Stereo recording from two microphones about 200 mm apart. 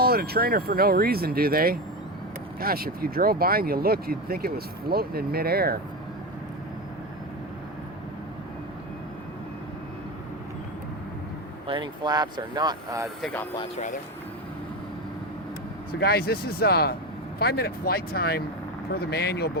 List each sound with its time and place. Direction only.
0.0 s speech: 50° right (ahead or behind)
11.7 s speech: 20° right (ahead or behind)
13.2 s speech: 10° left (ahead or behind)
16.0 s speech: 50° left (ahead or behind)